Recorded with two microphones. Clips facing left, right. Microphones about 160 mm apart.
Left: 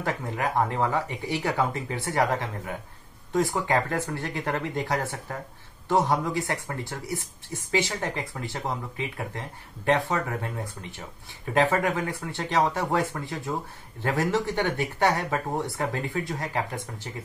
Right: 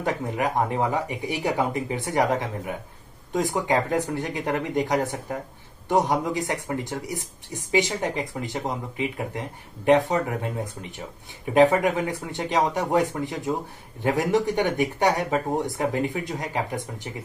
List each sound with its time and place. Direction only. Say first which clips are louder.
0.0 s speech: right 3 dB; 20° right (ahead or behind)